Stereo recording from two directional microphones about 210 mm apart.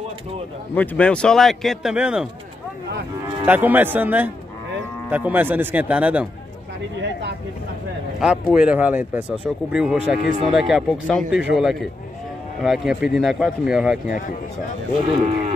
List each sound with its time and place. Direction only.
0.7 s speech: 5° left (ahead or behind)
3.4 s speech: 10° right (ahead or behind)
8.2 s speech: 5° right (ahead or behind)
15.0 s speech: 35° right (ahead or behind)